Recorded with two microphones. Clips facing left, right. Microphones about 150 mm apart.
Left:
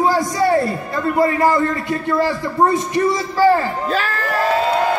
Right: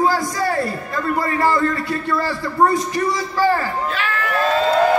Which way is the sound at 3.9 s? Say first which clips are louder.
Left 2 dB; 40° left (ahead or behind).